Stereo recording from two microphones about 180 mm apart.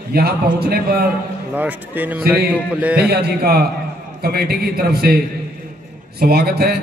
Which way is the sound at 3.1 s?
60° right (ahead or behind).